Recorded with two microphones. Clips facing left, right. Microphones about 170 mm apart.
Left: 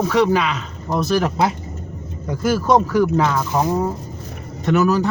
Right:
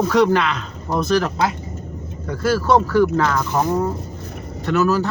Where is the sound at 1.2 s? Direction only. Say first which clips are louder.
Left 2 dB; 20° left (ahead or behind).